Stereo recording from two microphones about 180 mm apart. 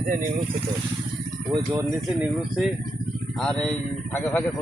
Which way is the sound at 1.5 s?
15° right (ahead or behind).